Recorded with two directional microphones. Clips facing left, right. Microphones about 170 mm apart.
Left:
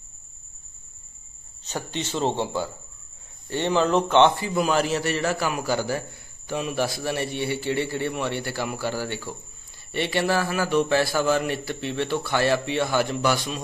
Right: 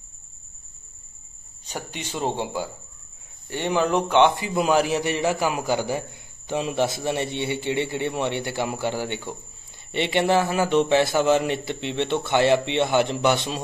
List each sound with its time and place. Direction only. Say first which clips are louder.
1.6 s a man's voice: left 3 dB; 10° right (ahead or behind)